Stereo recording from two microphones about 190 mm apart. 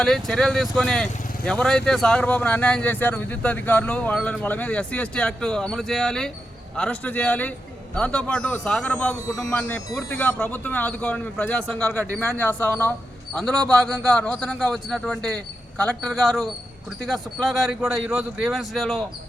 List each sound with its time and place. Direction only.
0.0 s speech: 5° left (ahead or behind)
9.2 s speech: 15° left (ahead or behind)
9.5 s speech: 5° left (ahead or behind)